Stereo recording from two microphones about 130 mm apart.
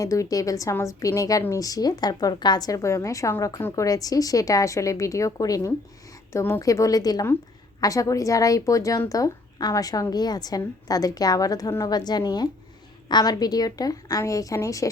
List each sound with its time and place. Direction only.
0.0 s a woman's voice: 25° left (ahead or behind)